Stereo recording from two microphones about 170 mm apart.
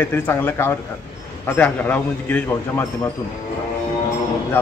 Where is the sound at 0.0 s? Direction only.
10° left (ahead or behind).